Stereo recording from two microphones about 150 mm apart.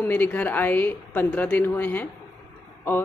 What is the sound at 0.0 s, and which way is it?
A woman's voice, 10° left (ahead or behind).